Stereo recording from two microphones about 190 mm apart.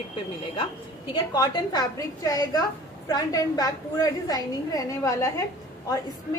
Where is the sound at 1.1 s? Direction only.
20° left (ahead or behind).